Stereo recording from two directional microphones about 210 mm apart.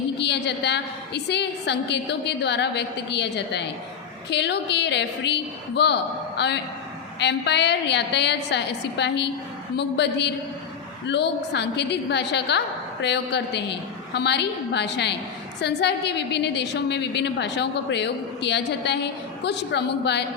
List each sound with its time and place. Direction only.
0.2 s a woman's voice: 55° left (ahead or behind)